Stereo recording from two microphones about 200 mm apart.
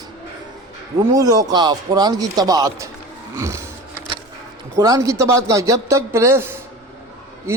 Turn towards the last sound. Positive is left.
turn(degrees=-15)  # may be behind; listen again after turning